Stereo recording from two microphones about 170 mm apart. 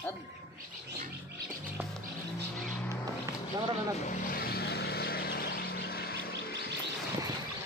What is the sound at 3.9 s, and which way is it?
Vehicle, 45° left (ahead or behind).